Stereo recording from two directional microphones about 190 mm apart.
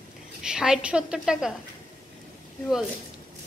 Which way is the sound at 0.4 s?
5° right (ahead or behind).